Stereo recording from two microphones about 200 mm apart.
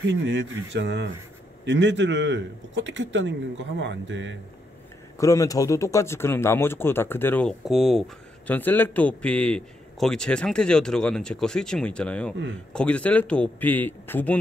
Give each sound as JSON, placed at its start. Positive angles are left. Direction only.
{"t": 0.0, "sound": "a man's voice", "side_deg": -60}
{"t": 5.1, "sound": "a man's voice", "side_deg": 15}